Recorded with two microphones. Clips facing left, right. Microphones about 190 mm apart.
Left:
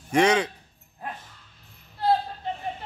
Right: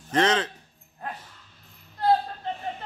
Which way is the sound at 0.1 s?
10° left (ahead or behind).